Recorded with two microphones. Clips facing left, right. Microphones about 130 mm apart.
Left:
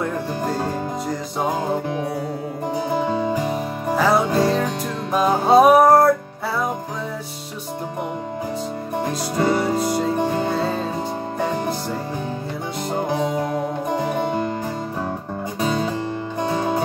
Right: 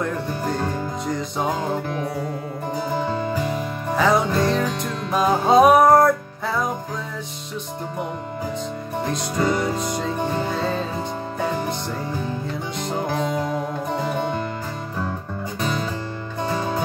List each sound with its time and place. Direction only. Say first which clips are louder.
2.9 s music: left 3 dB; 15° left (ahead or behind)
3.9 s music: left 1 dB; 5° left (ahead or behind)
9.4 s music: left 2 dB; 25° left (ahead or behind)
9.8 s music: left 4 dB; 5° left (ahead or behind)
13.1 s music: left 2 dB; 15° left (ahead or behind)
16.4 s music: left 2 dB; 20° left (ahead or behind)